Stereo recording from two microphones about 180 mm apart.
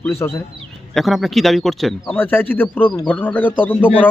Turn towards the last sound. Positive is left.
turn(degrees=10)  # may be behind; listen again after turning